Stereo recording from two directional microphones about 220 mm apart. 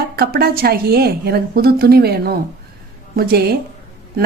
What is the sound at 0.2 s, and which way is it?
A woman's voice, 45° right (ahead or behind).